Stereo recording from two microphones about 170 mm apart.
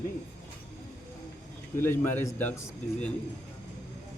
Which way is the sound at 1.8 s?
15° left (ahead or behind).